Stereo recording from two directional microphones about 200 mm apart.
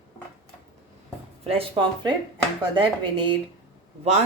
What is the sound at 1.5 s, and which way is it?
Speech, 25° right (ahead or behind).